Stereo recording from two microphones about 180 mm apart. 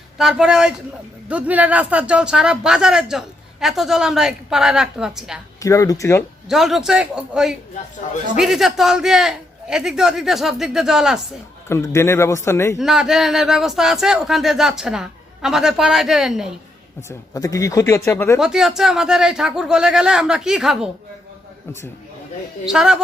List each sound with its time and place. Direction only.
0.2 s speech: 5° right (ahead or behind)
5.6 s speech: 20° left (ahead or behind)
6.5 s speech: centre (ahead or behind)
11.7 s speech: 15° left (ahead or behind)
12.8 s speech: 5° right (ahead or behind)
17.1 s speech: 20° left (ahead or behind)
18.3 s speech: 5° right (ahead or behind)
22.6 s speech: 5° right (ahead or behind)